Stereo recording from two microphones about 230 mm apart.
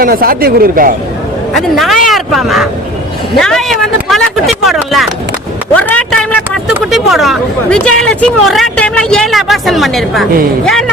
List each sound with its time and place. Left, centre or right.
0.0 s speech: right
1.5 s speech: centre
5.7 s a sound: centre
6.7 s speech: centre